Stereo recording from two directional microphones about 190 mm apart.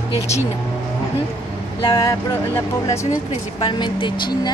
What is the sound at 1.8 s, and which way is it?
A woman's voice, 20° left (ahead or behind).